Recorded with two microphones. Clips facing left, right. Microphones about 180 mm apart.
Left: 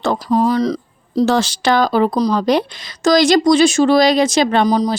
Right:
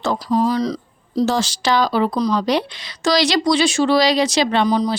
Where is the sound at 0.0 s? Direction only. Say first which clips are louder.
Left 3 dB; 55° left (ahead or behind).